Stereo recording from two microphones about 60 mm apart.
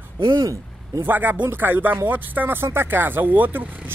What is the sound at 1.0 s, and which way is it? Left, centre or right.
Speech, right.